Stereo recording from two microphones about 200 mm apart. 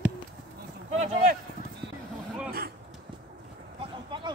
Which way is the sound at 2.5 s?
50° right (ahead or behind).